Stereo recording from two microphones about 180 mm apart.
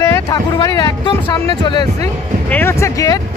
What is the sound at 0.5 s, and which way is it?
Speech, 20° left (ahead or behind).